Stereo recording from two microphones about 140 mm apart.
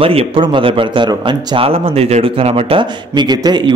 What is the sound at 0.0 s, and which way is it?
A man's voice, 40° right (ahead or behind).